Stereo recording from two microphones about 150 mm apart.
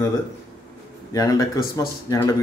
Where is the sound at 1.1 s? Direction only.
25° left (ahead or behind).